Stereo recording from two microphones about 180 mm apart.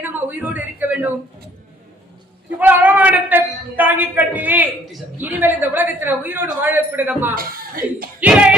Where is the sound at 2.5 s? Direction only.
10° right (ahead or behind).